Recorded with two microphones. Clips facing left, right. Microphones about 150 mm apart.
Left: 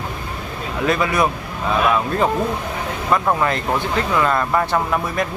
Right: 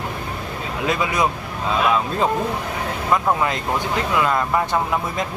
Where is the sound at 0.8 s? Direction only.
20° right (ahead or behind).